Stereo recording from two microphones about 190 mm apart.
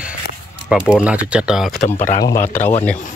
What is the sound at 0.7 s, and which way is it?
Speech, 5° right (ahead or behind).